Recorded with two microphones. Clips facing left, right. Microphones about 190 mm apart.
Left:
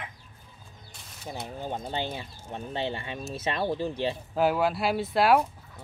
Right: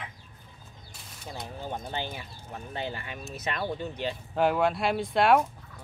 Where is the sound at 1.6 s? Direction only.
20° left (ahead or behind).